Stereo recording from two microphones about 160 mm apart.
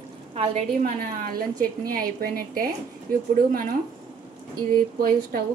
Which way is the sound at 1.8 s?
65° right (ahead or behind).